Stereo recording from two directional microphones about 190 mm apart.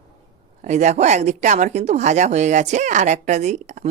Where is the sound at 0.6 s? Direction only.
35° right (ahead or behind).